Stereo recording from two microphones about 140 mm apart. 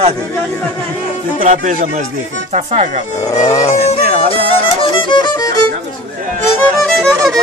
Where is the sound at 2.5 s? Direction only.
55° right (ahead or behind).